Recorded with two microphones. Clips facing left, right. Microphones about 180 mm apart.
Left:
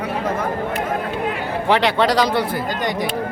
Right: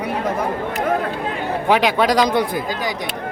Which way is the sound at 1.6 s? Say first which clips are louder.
Even; 10° right (ahead or behind).